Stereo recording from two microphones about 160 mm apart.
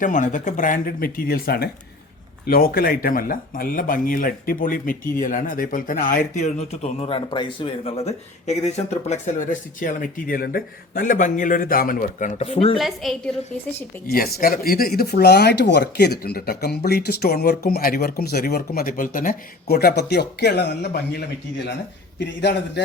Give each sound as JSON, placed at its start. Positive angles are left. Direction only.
{"t": 0.0, "sound": "speech", "side_deg": 50}
{"t": 12.8, "sound": "a woman's voice", "side_deg": 0}
{"t": 14.1, "sound": "a man's voice", "side_deg": 65}